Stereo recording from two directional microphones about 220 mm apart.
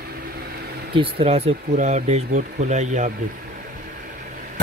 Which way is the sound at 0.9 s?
25° right (ahead or behind).